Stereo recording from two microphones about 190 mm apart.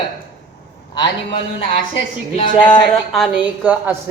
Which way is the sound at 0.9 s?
25° left (ahead or behind).